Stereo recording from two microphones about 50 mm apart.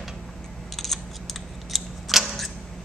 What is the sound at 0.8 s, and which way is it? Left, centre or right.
Scissors, centre.